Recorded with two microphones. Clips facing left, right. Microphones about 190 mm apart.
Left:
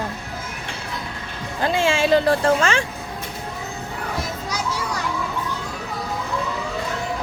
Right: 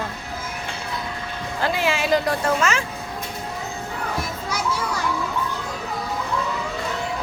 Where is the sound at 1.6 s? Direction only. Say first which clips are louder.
Left 3 dB; 25° left (ahead or behind).